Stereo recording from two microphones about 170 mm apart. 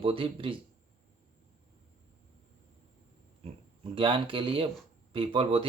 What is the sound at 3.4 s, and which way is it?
Speech, 30° right (ahead or behind).